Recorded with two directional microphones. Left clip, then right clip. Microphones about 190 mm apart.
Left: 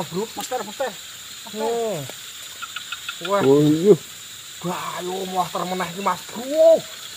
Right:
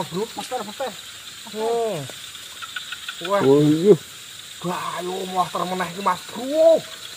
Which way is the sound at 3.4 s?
Centre (ahead or behind).